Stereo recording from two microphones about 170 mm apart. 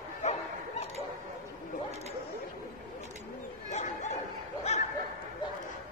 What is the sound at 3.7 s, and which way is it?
Bow-wow, 45° left (ahead or behind).